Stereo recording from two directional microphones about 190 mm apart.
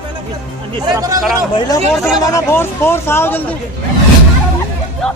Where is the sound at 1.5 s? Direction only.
20° left (ahead or behind).